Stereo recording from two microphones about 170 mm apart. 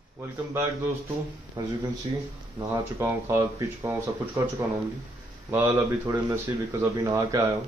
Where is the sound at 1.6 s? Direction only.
25° right (ahead or behind).